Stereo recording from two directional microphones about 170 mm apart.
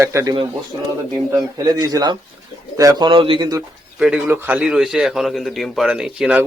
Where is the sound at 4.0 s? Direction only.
10° right (ahead or behind).